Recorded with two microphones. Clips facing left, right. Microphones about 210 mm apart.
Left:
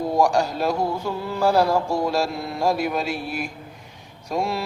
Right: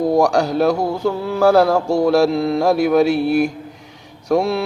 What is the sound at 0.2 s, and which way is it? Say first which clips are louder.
Mantra: right 5 dB; 75° right (ahead or behind).